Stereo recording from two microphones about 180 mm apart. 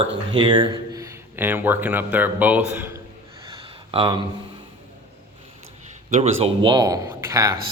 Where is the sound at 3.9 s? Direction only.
30° right (ahead or behind).